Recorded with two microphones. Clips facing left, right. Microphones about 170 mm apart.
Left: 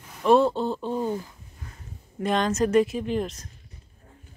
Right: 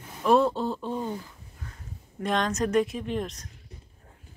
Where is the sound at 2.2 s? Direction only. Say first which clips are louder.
Left 3 dB; centre (ahead or behind).